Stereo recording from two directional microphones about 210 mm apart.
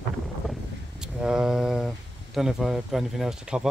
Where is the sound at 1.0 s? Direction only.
5° right (ahead or behind).